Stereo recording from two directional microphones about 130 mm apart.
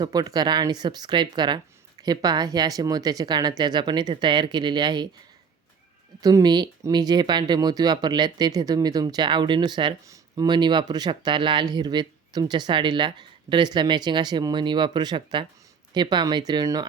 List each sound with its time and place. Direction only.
0.0 s speech: 30° right (ahead or behind)
6.2 s speech: 30° right (ahead or behind)